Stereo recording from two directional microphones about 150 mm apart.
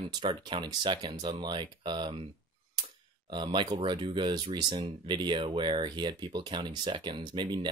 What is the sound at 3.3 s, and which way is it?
Speech, 30° right (ahead or behind).